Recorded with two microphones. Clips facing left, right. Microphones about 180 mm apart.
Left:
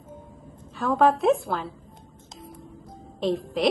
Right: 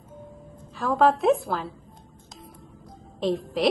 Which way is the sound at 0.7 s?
Centre (ahead or behind).